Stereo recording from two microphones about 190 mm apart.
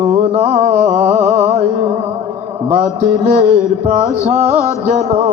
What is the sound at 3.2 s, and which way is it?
Music, 40° right (ahead or behind).